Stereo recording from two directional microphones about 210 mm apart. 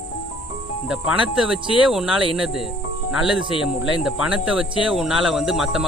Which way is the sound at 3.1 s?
5° right (ahead or behind).